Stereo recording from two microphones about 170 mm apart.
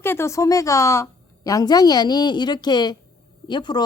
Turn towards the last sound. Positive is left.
turn(degrees=25)  # may be behind; listen again after turning